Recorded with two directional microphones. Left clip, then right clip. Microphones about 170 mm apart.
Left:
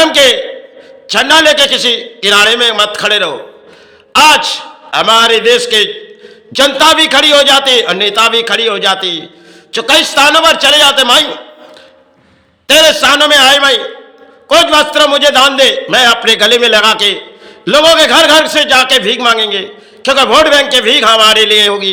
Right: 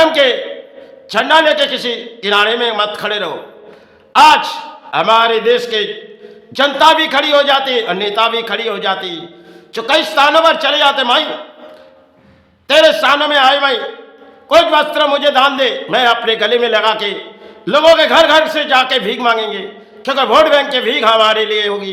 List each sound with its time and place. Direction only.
0.0 s a sound: 15° left (ahead or behind)
1.0 s a man's voice: 15° left (ahead or behind)
12.6 s a man's voice: 15° left (ahead or behind)